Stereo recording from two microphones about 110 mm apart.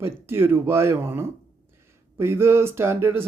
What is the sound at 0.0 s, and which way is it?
Speech, 20° right (ahead or behind).